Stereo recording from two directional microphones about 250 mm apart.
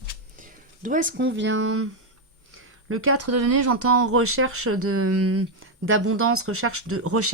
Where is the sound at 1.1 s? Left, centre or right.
Right.